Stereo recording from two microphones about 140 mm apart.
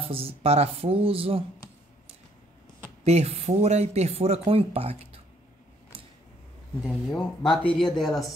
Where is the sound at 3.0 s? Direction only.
50° right (ahead or behind).